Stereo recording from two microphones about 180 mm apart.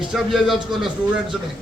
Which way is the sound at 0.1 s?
Centre (ahead or behind).